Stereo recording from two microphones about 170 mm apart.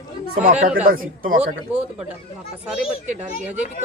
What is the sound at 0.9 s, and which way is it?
Speech, 55° right (ahead or behind).